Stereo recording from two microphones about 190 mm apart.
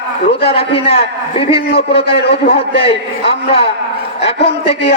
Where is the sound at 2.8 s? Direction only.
30° left (ahead or behind).